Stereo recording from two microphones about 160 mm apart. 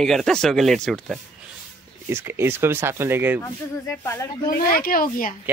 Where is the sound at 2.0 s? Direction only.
15° right (ahead or behind).